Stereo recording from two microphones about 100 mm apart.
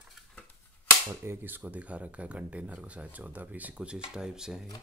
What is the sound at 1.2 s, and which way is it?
Speech, 20° right (ahead or behind).